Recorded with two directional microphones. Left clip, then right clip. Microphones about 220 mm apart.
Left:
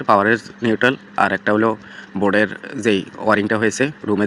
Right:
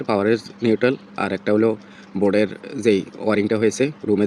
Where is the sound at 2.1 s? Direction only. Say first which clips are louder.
Left 2 dB; 60° left (ahead or behind).